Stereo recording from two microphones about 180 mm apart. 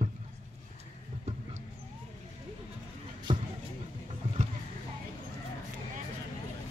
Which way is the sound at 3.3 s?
25° right (ahead or behind).